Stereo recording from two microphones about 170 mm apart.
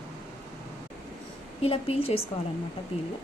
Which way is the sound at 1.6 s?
35° left (ahead or behind).